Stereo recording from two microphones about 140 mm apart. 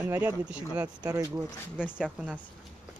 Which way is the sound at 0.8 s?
25° right (ahead or behind).